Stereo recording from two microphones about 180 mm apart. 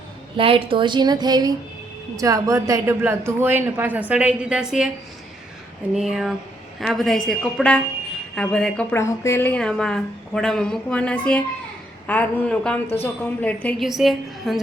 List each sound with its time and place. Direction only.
0.3 s a woman's voice: 30° right (ahead or behind); by 4.9 s 5° right (ahead or behind)
5.9 s a woman's voice: centre (ahead or behind)